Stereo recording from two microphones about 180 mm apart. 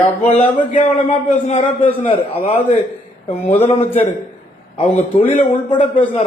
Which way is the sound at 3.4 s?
35° left (ahead or behind).